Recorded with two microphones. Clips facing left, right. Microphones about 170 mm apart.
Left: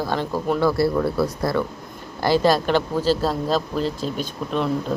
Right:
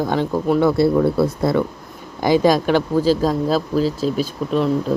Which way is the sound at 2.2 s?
15° right (ahead or behind).